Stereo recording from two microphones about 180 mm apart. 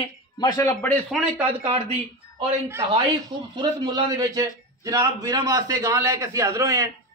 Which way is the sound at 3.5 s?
25° right (ahead or behind).